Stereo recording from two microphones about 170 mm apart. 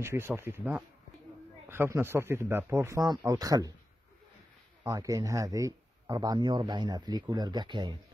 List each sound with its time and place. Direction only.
0.0 s speech: 15° right (ahead or behind)
4.8 s speech: 20° right (ahead or behind)